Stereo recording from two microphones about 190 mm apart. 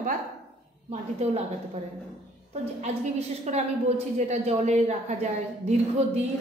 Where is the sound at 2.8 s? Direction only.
35° right (ahead or behind).